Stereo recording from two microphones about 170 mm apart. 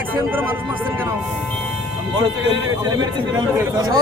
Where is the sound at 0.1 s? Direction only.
10° right (ahead or behind).